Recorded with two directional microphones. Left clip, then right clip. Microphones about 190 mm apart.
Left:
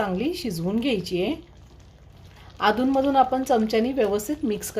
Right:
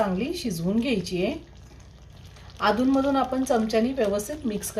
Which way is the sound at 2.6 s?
50° left (ahead or behind).